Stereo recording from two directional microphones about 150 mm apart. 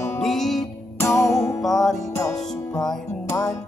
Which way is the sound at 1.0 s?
20° left (ahead or behind).